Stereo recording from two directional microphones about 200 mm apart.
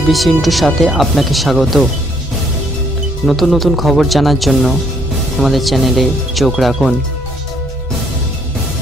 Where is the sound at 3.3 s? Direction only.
Centre (ahead or behind).